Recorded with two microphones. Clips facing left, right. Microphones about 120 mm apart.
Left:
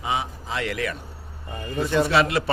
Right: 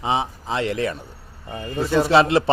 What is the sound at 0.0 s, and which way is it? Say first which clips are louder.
Speech: right 4 dB; 30° right (ahead or behind).